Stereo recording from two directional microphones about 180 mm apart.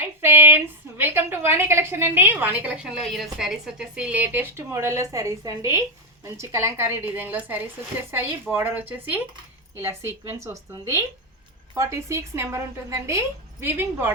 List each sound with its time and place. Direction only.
0.2 s a woman's voice: 15° right (ahead or behind)